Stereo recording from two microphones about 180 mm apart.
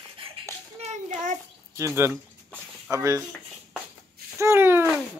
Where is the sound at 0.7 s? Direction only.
40° right (ahead or behind).